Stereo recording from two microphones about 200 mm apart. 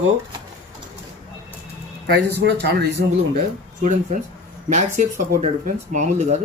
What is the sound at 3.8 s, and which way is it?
Speech, 40° right (ahead or behind).